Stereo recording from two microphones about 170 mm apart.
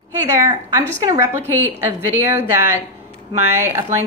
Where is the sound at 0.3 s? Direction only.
20° right (ahead or behind).